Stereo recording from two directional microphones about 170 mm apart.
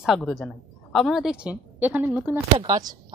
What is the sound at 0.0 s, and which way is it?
A woman's voice, centre (ahead or behind).